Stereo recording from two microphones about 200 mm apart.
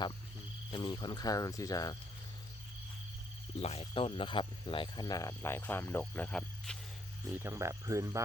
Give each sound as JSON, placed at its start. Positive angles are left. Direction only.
{"t": 0.7, "sound": "speech", "side_deg": 25}
{"t": 3.6, "sound": "speech", "side_deg": 30}
{"t": 7.3, "sound": "speech", "side_deg": -10}